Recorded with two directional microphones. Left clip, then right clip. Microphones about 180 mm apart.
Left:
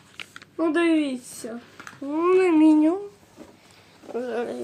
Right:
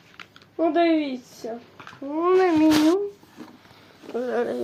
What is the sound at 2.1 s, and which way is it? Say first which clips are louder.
Speech: even; 45° left (ahead or behind).